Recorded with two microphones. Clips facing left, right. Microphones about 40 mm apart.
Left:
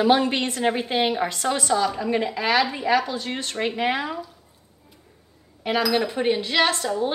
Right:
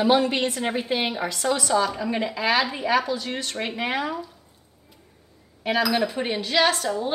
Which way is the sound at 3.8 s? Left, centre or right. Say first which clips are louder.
Left 1 dB; left.